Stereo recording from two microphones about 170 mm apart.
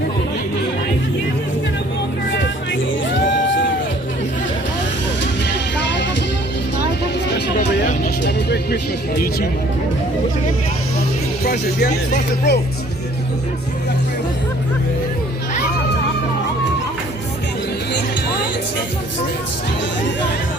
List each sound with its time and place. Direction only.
2.3 s music: 90° left
7.3 s vehicle: 80° left
8.2 s music: 75° left (ahead or behind)
11.8 s speech: 70° left (ahead or behind)